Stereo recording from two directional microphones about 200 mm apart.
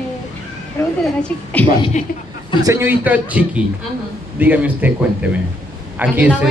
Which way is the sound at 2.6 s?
15° right (ahead or behind).